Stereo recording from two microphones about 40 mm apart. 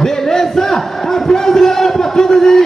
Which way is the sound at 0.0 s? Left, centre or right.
Centre.